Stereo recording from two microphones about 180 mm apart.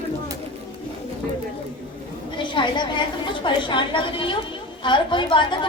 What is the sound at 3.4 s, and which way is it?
A child's voice, 25° left (ahead or behind).